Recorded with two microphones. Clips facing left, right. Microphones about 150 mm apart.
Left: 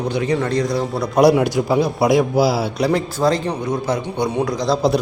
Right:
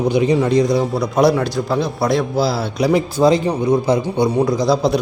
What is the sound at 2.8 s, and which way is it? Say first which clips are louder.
A man's voice: right 7 dB; 10° right (ahead or behind).